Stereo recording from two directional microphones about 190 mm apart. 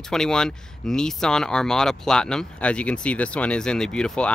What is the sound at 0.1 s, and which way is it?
Speech, 5° left (ahead or behind).